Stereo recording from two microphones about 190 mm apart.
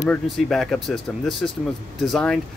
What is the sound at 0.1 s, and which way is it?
Speech, centre (ahead or behind).